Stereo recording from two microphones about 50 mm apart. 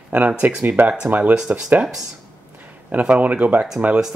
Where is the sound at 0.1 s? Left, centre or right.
Right.